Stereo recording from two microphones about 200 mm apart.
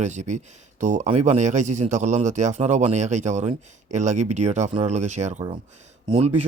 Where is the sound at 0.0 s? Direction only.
35° right (ahead or behind).